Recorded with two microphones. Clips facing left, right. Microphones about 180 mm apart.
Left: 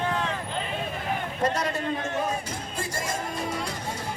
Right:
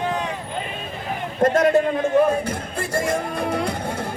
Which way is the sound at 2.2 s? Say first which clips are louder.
Right 10 dB; 60° right (ahead or behind).